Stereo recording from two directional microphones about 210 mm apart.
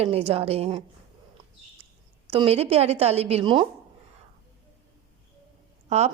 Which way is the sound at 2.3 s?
25° right (ahead or behind).